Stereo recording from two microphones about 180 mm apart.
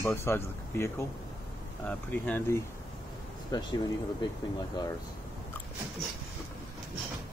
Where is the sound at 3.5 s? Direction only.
25° left (ahead or behind).